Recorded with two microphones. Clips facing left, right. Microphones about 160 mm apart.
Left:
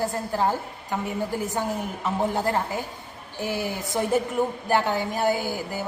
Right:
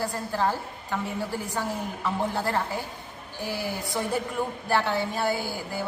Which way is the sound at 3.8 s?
20° left (ahead or behind).